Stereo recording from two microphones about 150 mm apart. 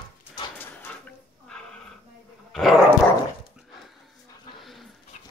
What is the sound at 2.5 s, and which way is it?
Dog, centre (ahead or behind).